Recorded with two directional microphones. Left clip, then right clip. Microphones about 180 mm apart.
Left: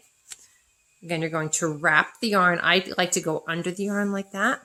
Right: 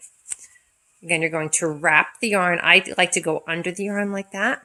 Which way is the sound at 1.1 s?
20° left (ahead or behind).